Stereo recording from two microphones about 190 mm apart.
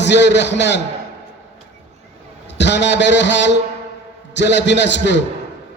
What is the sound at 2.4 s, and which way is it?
A man's voice, 65° left (ahead or behind).